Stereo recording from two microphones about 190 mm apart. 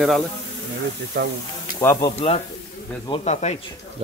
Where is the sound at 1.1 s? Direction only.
60° right (ahead or behind).